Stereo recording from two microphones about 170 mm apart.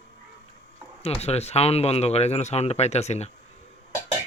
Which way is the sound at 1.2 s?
40° left (ahead or behind).